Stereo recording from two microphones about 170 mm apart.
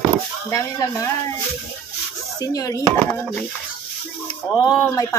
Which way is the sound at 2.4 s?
20° left (ahead or behind).